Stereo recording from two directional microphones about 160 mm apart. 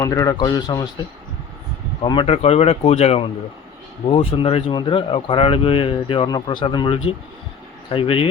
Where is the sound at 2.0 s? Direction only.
30° left (ahead or behind).